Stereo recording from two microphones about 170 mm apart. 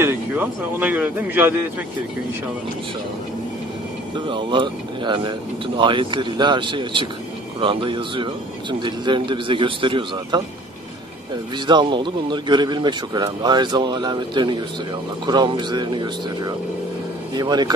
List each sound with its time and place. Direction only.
0.0 s speech: 10° right (ahead or behind)
4.3 s a man's voice: 30° right (ahead or behind)
11.5 s a man's voice: 25° right (ahead or behind)